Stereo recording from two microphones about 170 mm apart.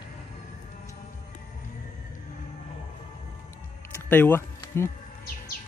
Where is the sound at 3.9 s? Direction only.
10° left (ahead or behind).